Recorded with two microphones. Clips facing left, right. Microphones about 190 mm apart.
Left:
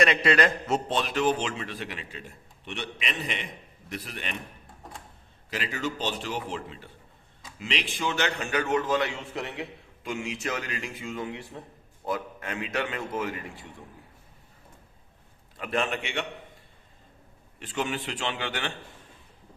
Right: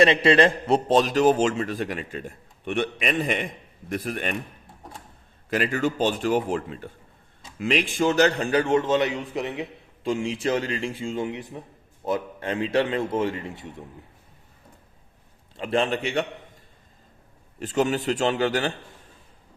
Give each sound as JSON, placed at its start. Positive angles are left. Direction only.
{"t": 0.0, "sound": "a man's voice", "side_deg": -25}
{"t": 5.5, "sound": "a man's voice", "side_deg": -50}
{"t": 10.0, "sound": "a man's voice", "side_deg": -30}
{"t": 15.5, "sound": "a man's voice", "side_deg": -30}
{"t": 17.6, "sound": "a man's voice", "side_deg": -40}